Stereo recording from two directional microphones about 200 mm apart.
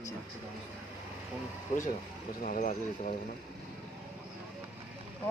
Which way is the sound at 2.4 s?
40° left (ahead or behind).